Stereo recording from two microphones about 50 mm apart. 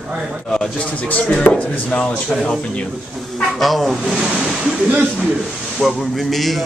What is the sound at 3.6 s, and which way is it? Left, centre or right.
Speech, centre.